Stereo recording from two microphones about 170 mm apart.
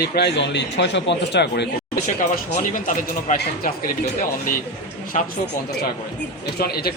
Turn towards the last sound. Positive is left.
turn(degrees=65)  # may be behind; listen again after turning